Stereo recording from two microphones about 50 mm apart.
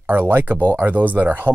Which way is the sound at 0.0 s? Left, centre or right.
Right.